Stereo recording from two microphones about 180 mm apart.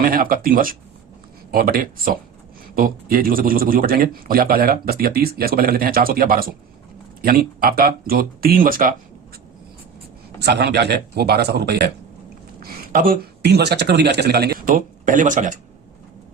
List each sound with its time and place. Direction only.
0.0 s a man's voice: 50° right (ahead or behind)
10.4 s speech: 65° right (ahead or behind)
12.6 s speech: 50° right (ahead or behind)